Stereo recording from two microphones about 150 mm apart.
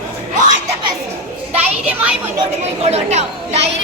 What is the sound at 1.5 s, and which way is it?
Speech, 10° right (ahead or behind).